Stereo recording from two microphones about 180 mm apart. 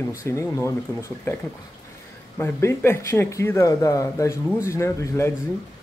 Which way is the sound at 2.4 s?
15° left (ahead or behind).